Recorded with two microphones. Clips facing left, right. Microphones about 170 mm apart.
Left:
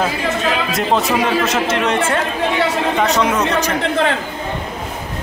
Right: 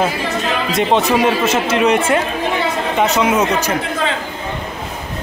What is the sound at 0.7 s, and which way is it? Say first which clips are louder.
A man's voice: right 5 dB; centre (ahead or behind).